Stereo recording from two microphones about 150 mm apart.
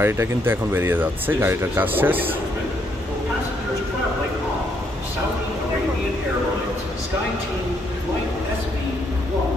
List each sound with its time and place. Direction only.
0.0 s speech: 15° right (ahead or behind)